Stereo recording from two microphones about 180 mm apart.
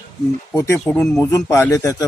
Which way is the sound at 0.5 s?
10° left (ahead or behind).